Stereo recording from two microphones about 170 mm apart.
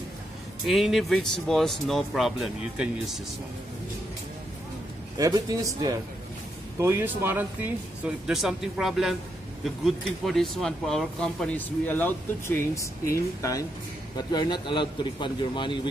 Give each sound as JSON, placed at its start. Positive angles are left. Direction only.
{"t": 0.7, "sound": "speech", "side_deg": 0}
{"t": 5.1, "sound": "a man's voice", "side_deg": -20}